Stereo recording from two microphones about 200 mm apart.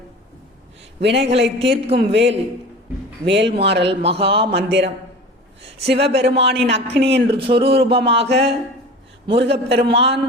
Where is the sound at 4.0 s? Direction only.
30° right (ahead or behind).